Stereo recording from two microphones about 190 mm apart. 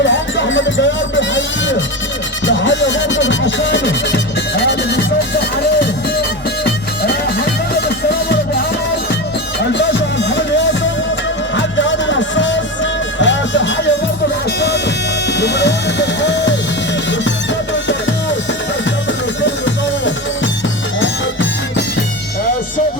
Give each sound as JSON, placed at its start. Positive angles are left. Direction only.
{"t": 0.0, "sound": "speech", "side_deg": 75}
{"t": 2.5, "sound": "music", "side_deg": 75}
{"t": 9.7, "sound": "music", "side_deg": 70}
{"t": 15.4, "sound": "music", "side_deg": 65}
{"t": 19.4, "sound": "music", "side_deg": 75}